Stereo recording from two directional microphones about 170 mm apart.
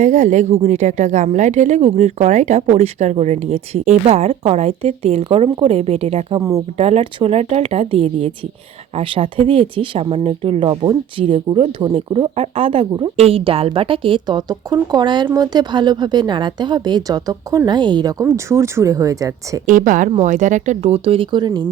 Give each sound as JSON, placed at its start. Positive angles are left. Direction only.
{"t": 0.0, "sound": "a woman's voice", "side_deg": -45}
{"t": 19.6, "sound": "speech", "side_deg": -50}